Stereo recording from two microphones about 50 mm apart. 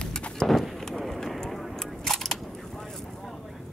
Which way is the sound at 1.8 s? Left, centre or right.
Centre.